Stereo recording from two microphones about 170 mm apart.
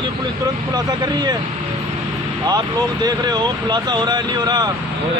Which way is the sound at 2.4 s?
25° right (ahead or behind).